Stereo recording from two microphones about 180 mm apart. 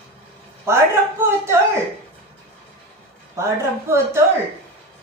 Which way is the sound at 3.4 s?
15° right (ahead or behind).